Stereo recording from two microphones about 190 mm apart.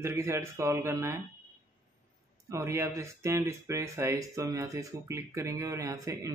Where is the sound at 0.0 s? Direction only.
15° right (ahead or behind).